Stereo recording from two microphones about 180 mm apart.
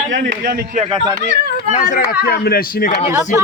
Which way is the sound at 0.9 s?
25° right (ahead or behind).